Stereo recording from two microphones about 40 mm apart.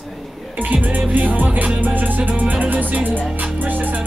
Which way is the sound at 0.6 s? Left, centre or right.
Right.